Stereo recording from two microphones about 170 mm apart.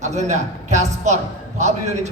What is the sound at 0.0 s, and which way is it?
A man's voice, 40° right (ahead or behind).